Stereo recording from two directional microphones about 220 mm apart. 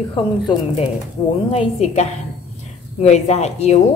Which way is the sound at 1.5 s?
30° left (ahead or behind).